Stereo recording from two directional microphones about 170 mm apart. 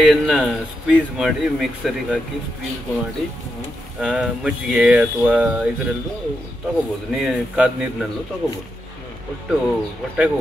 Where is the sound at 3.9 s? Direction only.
5° right (ahead or behind).